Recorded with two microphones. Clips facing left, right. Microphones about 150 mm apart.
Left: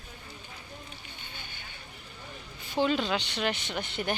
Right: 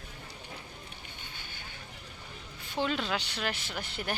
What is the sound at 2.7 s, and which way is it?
Speech, centre (ahead or behind).